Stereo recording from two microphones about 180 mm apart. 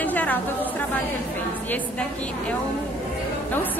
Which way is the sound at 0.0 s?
10° left (ahead or behind).